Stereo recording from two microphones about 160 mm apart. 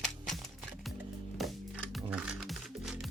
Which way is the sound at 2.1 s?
5° right (ahead or behind).